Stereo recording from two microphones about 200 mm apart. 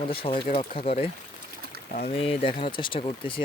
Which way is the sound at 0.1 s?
25° left (ahead or behind).